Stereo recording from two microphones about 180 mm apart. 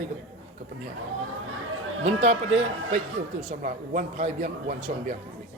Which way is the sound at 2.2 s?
40° right (ahead or behind).